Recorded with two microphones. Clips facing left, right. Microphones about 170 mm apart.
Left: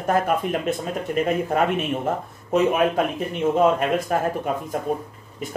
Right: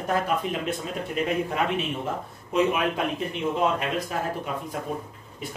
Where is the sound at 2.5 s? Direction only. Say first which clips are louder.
Left 4 dB; 45° left (ahead or behind).